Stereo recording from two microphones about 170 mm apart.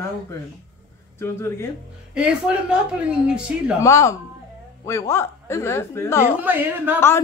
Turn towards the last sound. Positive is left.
turn(degrees=-10)  # may be behind; listen again after turning